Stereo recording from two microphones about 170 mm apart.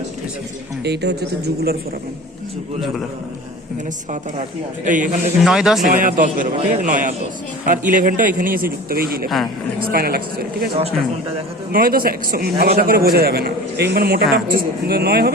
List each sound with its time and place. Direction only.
0.9 s speech: 75° right (ahead or behind)
4.9 s a man's voice: 50° right (ahead or behind)
5.4 s speech: centre (ahead or behind)
5.8 s a man's voice: 50° right (ahead or behind)
11.7 s a man's voice: 60° right (ahead or behind)